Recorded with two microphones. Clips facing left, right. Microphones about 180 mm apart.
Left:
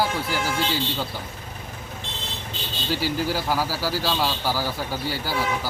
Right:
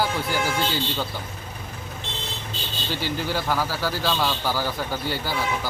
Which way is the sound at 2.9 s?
5° left (ahead or behind).